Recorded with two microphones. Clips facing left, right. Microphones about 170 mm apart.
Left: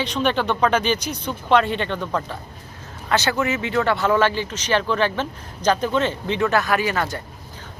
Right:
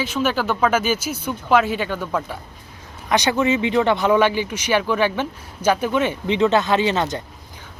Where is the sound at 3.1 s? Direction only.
15° right (ahead or behind).